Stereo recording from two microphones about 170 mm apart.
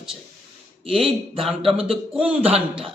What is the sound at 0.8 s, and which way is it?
Speech, 30° right (ahead or behind).